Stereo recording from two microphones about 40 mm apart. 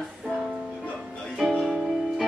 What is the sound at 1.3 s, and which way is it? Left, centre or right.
Music, centre.